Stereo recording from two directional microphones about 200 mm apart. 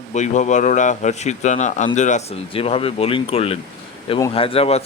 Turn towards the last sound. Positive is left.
turn(degrees=30)  # may be behind; listen again after turning